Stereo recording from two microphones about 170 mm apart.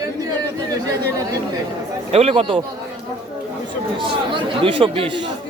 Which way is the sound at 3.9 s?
30° right (ahead or behind).